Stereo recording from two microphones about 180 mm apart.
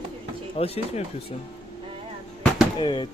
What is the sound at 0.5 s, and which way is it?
Speech, 35° left (ahead or behind).